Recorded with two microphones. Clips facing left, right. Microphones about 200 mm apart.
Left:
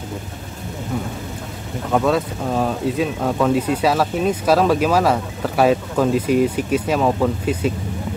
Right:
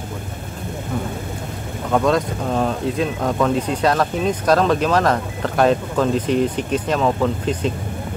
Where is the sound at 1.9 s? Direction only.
5° left (ahead or behind).